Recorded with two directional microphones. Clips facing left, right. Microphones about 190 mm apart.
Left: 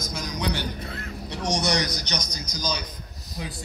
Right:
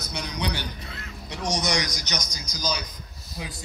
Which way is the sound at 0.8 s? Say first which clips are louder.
Left 5 dB; 50° left (ahead or behind).